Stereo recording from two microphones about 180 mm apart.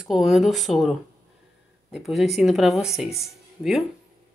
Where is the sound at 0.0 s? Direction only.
Centre (ahead or behind).